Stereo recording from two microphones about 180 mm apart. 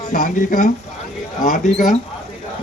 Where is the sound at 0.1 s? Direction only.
45° left (ahead or behind).